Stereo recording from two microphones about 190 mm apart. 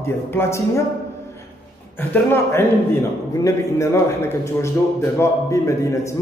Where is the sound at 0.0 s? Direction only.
15° left (ahead or behind).